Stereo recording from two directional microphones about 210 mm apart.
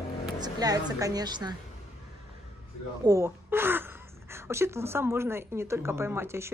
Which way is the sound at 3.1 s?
10° right (ahead or behind).